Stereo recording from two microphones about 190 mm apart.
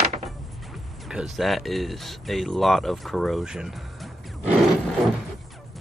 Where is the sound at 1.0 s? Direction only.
Centre (ahead or behind).